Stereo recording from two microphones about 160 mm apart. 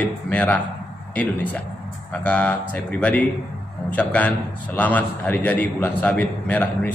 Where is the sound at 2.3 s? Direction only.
10° left (ahead or behind).